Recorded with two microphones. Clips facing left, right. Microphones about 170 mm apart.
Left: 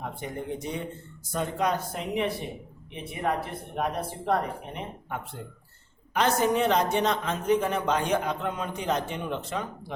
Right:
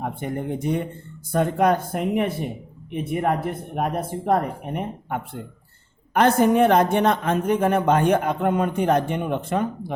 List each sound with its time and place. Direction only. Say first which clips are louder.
0.0 s speech: right 7 dB; 55° right (ahead or behind)